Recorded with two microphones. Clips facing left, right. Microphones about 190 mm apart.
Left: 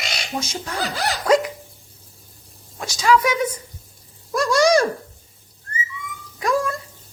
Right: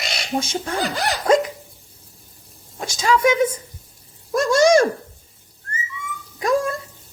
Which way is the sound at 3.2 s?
25° right (ahead or behind).